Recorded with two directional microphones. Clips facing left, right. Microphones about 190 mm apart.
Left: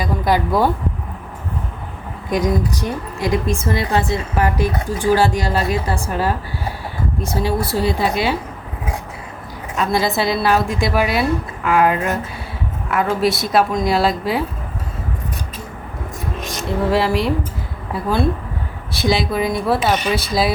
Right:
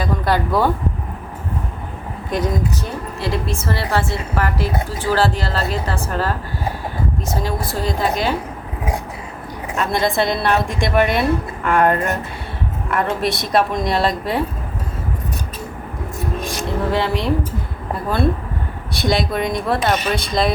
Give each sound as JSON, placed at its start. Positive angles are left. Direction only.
{"t": 0.0, "sound": "speech", "side_deg": 10}
{"t": 2.3, "sound": "a woman's voice", "side_deg": 10}
{"t": 9.7, "sound": "a woman's voice", "side_deg": 0}
{"t": 16.6, "sound": "a woman's voice", "side_deg": 0}
{"t": 18.9, "sound": "a woman's voice", "side_deg": 0}